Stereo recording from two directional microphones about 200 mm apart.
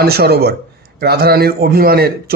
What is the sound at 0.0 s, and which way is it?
A man's voice, 50° right (ahead or behind).